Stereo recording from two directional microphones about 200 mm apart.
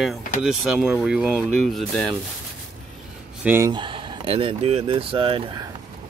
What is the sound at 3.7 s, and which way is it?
Speech, 25° right (ahead or behind).